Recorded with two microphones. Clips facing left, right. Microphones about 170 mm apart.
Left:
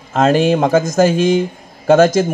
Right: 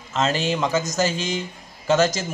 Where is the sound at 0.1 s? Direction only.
55° left (ahead or behind).